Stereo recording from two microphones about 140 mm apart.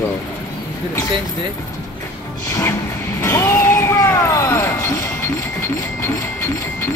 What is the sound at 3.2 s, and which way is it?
Vehicle, 20° left (ahead or behind).